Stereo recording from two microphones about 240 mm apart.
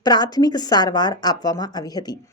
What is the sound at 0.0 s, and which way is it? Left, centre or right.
A woman's voice, centre.